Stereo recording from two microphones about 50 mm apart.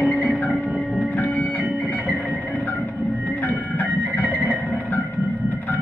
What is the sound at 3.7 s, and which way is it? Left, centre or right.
Music, left.